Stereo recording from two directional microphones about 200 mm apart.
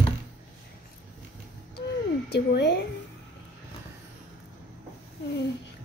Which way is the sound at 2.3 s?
55° left (ahead or behind).